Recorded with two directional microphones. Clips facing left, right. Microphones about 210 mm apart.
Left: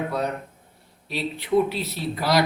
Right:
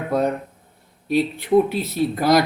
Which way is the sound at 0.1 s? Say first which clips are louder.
Right 6 dB; 50° right (ahead or behind).